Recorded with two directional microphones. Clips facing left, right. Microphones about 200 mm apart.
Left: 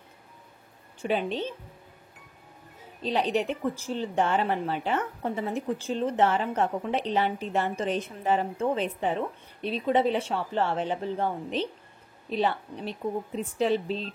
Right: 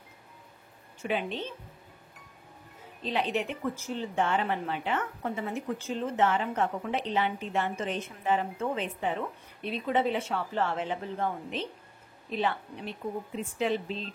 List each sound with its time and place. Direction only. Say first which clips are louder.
1.0 s a woman's voice: left 3 dB; 35° left (ahead or behind)
3.0 s a woman's voice: left 4 dB; 35° left (ahead or behind)